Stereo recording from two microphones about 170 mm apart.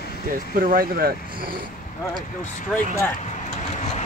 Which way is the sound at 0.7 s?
60° right (ahead or behind).